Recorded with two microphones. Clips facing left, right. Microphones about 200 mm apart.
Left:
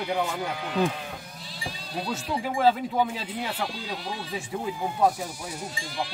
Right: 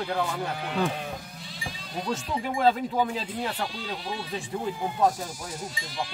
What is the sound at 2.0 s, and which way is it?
Speech, 5° left (ahead or behind).